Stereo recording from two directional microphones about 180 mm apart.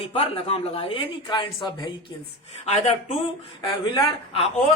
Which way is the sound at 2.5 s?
35° left (ahead or behind).